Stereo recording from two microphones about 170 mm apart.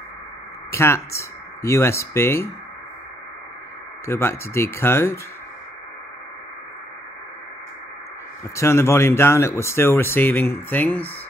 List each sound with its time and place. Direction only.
0.7 s speech: 15° left (ahead or behind)
4.0 s speech: 15° left (ahead or behind)
8.5 s speech: 15° left (ahead or behind)